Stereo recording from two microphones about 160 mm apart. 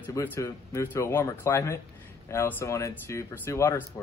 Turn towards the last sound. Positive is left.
turn(degrees=15)  # may be behind; listen again after turning